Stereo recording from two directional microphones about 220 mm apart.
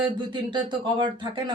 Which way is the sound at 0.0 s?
20° right (ahead or behind).